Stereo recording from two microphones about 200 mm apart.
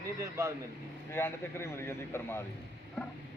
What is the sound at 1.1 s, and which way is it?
A man's voice, 10° left (ahead or behind).